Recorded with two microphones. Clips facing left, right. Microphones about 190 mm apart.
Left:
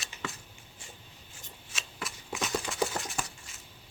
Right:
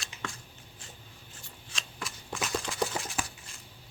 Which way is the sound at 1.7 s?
5° left (ahead or behind).